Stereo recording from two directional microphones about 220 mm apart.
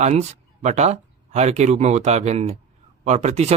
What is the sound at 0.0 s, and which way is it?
Speech, 30° right (ahead or behind).